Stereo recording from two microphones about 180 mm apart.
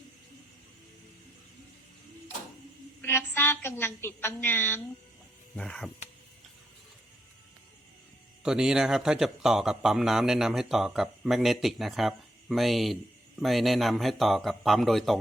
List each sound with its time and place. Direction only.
3.0 s a woman's voice: 10° left (ahead or behind)
8.4 s speech: 5° right (ahead or behind)